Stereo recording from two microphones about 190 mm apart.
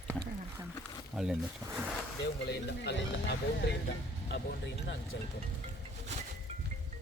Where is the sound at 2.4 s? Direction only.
60° left (ahead or behind).